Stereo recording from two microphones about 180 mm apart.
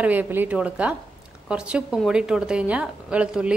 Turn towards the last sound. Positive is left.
turn(degrees=-5)  # may be behind; listen again after turning